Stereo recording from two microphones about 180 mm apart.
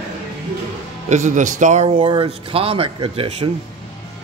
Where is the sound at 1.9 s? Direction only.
30° right (ahead or behind).